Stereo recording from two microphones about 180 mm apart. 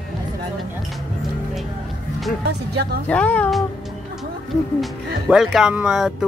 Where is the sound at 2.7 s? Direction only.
65° right (ahead or behind).